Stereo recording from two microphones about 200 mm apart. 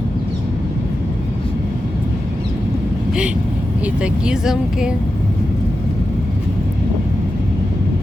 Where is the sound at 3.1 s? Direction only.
5° right (ahead or behind).